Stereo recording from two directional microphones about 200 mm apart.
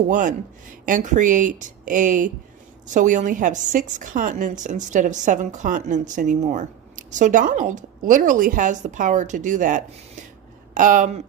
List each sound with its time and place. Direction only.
0.1 s a woman's voice: 40° right (ahead or behind)